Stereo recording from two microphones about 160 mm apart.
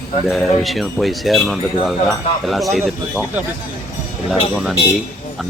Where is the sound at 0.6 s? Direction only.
Centre (ahead or behind).